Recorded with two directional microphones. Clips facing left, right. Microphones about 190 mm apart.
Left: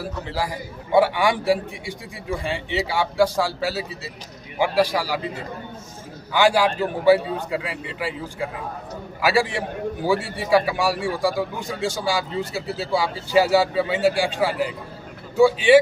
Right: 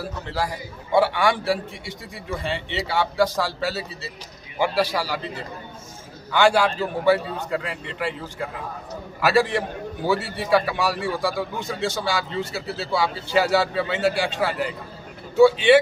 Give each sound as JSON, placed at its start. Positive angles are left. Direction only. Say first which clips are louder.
{"t": 0.9, "sound": "a man's voice", "louder": "left 1 dB", "side_deg": 15}
{"t": 6.3, "sound": "a man's voice", "louder": "even", "side_deg": 10}
{"t": 9.2, "sound": "a man's voice", "louder": "right 1 dB", "side_deg": 10}